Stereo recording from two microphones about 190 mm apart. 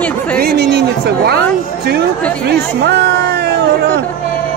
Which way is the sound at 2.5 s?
65° right (ahead or behind).